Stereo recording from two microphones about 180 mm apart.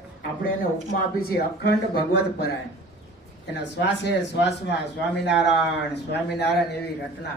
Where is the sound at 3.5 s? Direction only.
70° left (ahead or behind).